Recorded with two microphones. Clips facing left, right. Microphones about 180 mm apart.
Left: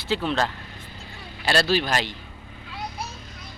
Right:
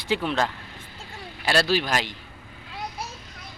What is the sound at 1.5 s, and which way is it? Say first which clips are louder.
Speech: left 1 dB; 10° right (ahead or behind).